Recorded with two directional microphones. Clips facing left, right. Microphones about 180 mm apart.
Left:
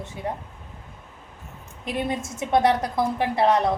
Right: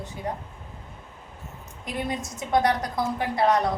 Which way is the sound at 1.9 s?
25° left (ahead or behind).